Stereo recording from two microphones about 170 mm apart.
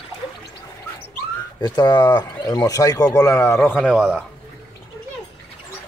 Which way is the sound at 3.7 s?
5° right (ahead or behind).